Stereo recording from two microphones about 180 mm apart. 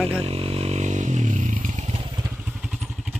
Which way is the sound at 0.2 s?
30° right (ahead or behind).